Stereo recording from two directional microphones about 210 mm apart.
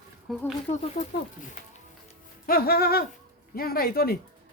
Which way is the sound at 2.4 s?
45° left (ahead or behind).